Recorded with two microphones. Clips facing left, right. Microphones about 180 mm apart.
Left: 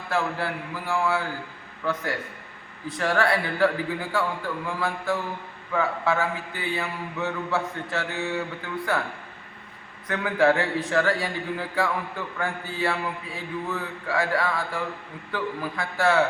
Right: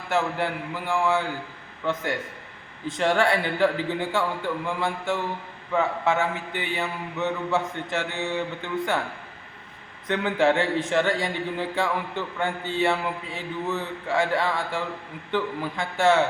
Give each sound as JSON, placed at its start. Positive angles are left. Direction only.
{"t": 0.1, "sound": "speech", "side_deg": -20}
{"t": 2.8, "sound": "speech", "side_deg": -25}
{"t": 10.1, "sound": "speech", "side_deg": -25}